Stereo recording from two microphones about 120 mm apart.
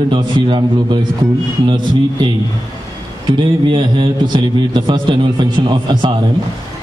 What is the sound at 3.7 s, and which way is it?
A man's voice, 40° right (ahead or behind).